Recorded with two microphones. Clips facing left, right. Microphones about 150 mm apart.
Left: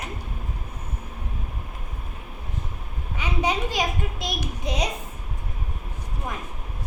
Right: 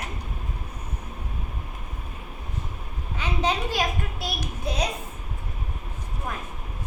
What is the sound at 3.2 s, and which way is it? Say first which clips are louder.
A woman's voice: left 1 dB; 10° left (ahead or behind).